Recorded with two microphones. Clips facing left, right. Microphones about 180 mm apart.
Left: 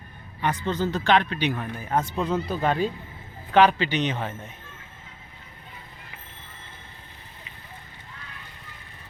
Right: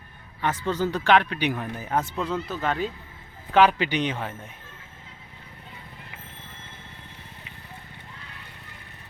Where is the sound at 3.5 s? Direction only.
10° right (ahead or behind).